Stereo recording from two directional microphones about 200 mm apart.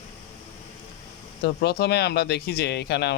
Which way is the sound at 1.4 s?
55° left (ahead or behind).